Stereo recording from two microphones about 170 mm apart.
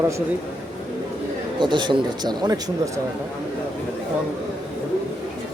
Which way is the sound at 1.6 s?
30° right (ahead or behind).